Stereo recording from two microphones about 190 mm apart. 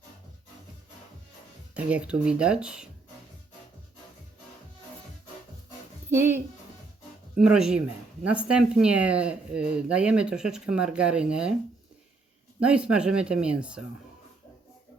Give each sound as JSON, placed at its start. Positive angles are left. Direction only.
{"t": 1.7, "sound": "speech", "side_deg": -5}
{"t": 6.1, "sound": "a woman's voice", "side_deg": -10}
{"t": 12.5, "sound": "speech", "side_deg": -5}